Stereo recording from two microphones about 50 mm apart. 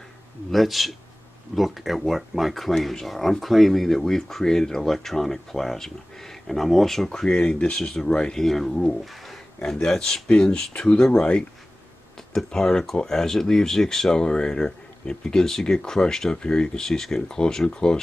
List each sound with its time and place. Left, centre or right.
0.5 s speech: centre
7.1 s speech: left; by 9.4 s centre
9.8 s speech: centre
10.2 s speech: left
12.4 s speech: centre